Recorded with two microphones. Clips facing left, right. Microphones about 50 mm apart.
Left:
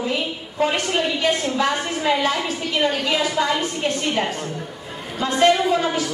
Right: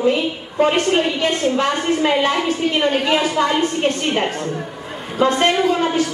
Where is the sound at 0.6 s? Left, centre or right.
Right.